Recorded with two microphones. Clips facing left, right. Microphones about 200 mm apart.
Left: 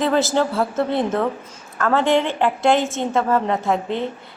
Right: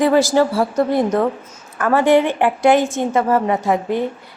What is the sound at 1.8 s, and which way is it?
A woman's voice, 15° right (ahead or behind).